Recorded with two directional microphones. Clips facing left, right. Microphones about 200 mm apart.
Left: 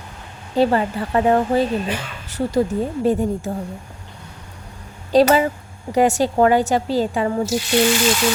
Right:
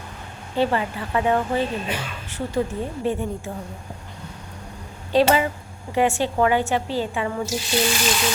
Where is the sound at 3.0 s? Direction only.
40° left (ahead or behind).